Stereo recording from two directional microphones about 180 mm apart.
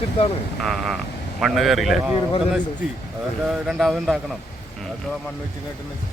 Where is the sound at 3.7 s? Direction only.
Centre (ahead or behind).